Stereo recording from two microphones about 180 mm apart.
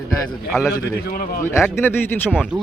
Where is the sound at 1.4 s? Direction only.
15° left (ahead or behind).